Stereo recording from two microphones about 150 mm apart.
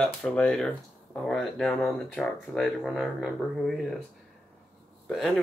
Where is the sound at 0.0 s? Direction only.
5° left (ahead or behind).